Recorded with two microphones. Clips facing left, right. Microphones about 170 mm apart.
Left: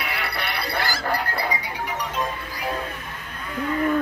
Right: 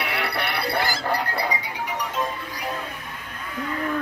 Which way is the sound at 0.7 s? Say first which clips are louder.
Even; 20° right (ahead or behind).